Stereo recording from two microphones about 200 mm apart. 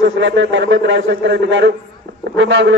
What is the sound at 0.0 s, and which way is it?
A man's voice, 65° right (ahead or behind).